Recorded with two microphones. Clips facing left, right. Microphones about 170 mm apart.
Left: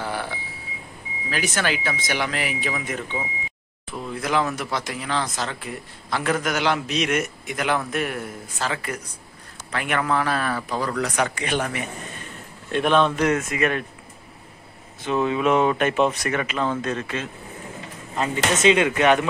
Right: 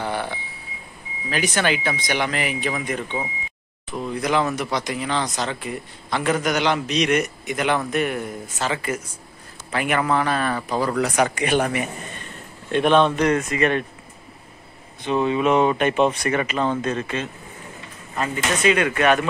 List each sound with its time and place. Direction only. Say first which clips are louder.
0.0 s a sound: right 3 dB; 5° left (ahead or behind)
1.3 s speech: right 3 dB; centre (ahead or behind); by 11.5 s 15° right (ahead or behind)
12.7 s speech: right 2 dB; centre (ahead or behind)
15.0 s speech: right 1 dB; centre (ahead or behind)
18.1 s speech: left 1 dB; 20° left (ahead or behind)